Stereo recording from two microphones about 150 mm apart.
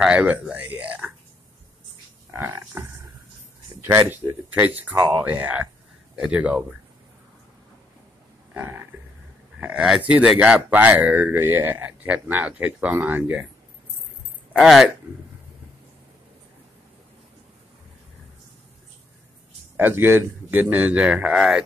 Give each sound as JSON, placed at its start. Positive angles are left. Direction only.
{"t": 0.0, "sound": "speech", "side_deg": -5}
{"t": 2.3, "sound": "a sound", "side_deg": -15}
{"t": 3.8, "sound": "speech", "side_deg": -15}
{"t": 8.5, "sound": "speech", "side_deg": -15}
{"t": 14.5, "sound": "speech", "side_deg": 0}
{"t": 19.8, "sound": "speech", "side_deg": -15}